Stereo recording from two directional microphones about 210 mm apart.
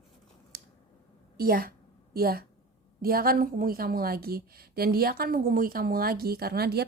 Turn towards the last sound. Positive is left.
turn(degrees=-50)  # may be behind; listen again after turning